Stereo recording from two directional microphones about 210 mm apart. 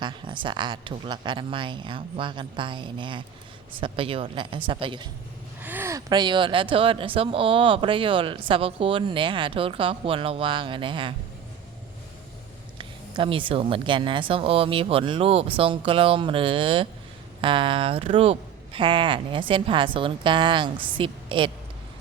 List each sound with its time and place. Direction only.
0.0 s speech: 20° right (ahead or behind)
5.6 s speech: 10° right (ahead or behind)
12.8 s a woman's voice: 25° right (ahead or behind)